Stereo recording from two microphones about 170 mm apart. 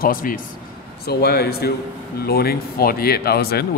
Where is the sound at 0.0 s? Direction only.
55° left (ahead or behind).